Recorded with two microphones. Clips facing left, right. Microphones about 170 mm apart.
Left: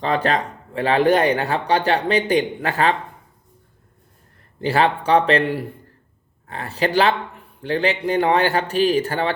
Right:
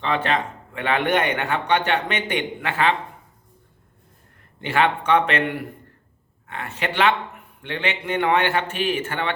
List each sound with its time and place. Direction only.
0.0 s speech: 40° left (ahead or behind)
4.6 s speech: 35° left (ahead or behind)